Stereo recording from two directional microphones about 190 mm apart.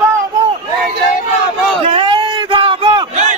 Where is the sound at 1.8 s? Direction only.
30° right (ahead or behind).